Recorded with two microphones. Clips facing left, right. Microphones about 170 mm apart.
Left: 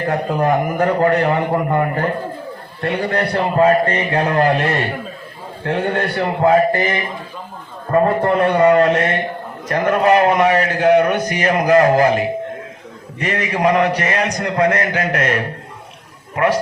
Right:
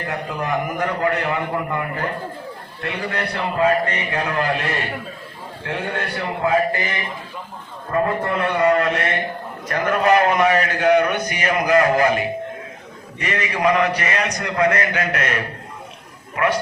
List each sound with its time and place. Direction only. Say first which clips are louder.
0.3 s a man's voice: left 7 dB; 50° left (ahead or behind)
0.8 s a man's voice: left 7 dB; 35° left (ahead or behind)
8.6 s mantra: left 4 dB; 30° left (ahead or behind)
9.6 s a man's voice: left 3 dB; 30° left (ahead or behind)